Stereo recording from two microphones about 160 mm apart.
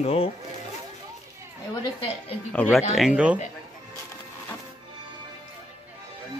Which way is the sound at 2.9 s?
5° right (ahead or behind).